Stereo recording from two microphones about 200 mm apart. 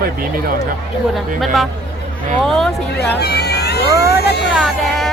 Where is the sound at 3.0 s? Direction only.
55° left (ahead or behind).